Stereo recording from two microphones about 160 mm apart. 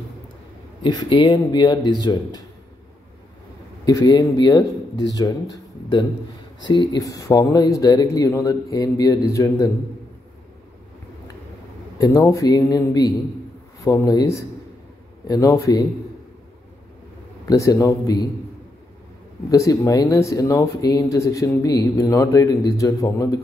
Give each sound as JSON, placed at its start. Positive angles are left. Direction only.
{"t": 0.8, "sound": "speech", "side_deg": 30}
{"t": 3.8, "sound": "speech", "side_deg": 25}
{"t": 12.0, "sound": "speech", "side_deg": 20}
{"t": 17.5, "sound": "speech", "side_deg": 20}
{"t": 19.5, "sound": "speech", "side_deg": 20}